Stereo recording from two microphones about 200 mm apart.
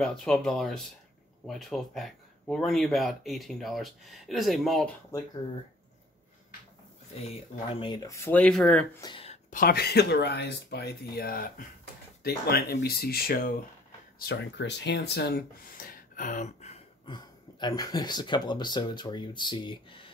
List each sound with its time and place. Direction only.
0.0 s speech: 5° left (ahead or behind)
7.8 s speech: 20° left (ahead or behind)
9.0 s speech: 25° left (ahead or behind)